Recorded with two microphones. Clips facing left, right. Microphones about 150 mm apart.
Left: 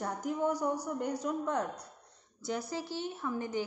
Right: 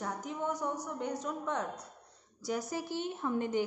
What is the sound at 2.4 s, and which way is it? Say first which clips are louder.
A woman's voice: right 1 dB; 15° right (ahead or behind).